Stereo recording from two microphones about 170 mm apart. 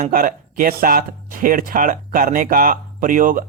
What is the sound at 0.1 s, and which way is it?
Speech, 55° right (ahead or behind).